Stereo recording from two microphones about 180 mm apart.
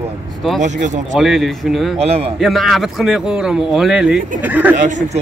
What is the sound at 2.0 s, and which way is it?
Speech, 35° right (ahead or behind).